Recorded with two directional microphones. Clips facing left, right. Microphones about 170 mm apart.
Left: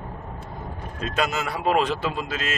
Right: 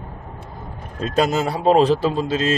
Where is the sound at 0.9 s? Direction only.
35° right (ahead or behind).